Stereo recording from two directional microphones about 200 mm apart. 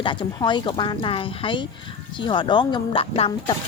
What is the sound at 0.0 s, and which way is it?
A woman's voice, 25° left (ahead or behind).